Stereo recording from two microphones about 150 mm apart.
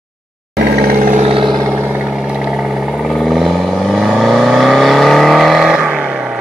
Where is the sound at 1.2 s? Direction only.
40° right (ahead or behind).